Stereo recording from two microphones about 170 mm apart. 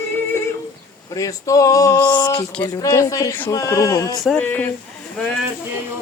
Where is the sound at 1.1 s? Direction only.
20° left (ahead or behind).